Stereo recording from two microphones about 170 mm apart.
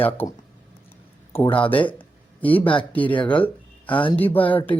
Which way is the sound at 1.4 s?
30° left (ahead or behind).